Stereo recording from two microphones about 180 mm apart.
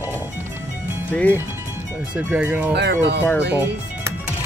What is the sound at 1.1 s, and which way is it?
Speech, 10° left (ahead or behind).